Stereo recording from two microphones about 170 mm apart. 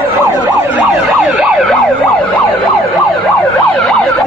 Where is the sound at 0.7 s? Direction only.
10° right (ahead or behind).